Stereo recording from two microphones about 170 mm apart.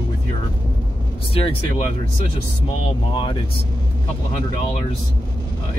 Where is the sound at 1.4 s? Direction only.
35° left (ahead or behind).